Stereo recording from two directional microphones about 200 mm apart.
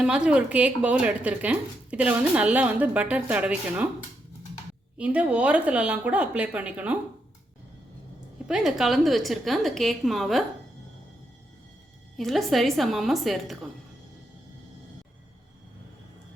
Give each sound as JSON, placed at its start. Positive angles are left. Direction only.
{"t": 0.0, "sound": "speech", "side_deg": -5}
{"t": 4.9, "sound": "speech", "side_deg": -5}
{"t": 8.4, "sound": "a woman's voice", "side_deg": 0}
{"t": 12.1, "sound": "a woman's voice", "side_deg": 0}